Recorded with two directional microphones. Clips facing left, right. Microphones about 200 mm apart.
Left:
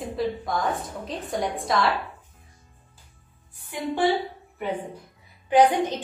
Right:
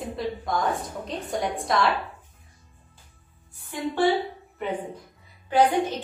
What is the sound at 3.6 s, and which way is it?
Speech, 10° left (ahead or behind).